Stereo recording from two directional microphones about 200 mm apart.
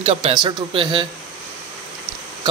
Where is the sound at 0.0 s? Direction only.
30° right (ahead or behind).